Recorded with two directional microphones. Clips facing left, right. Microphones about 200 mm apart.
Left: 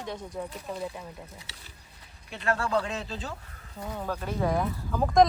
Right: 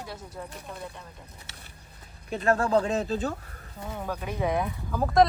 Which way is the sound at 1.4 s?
55° right (ahead or behind).